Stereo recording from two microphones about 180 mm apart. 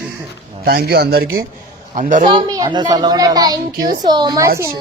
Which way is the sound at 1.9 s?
45° right (ahead or behind).